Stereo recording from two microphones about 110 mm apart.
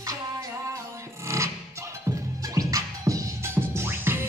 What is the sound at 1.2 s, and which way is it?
Music, 25° right (ahead or behind).